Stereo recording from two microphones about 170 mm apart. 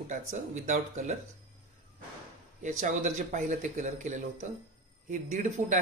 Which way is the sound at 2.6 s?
45° right (ahead or behind).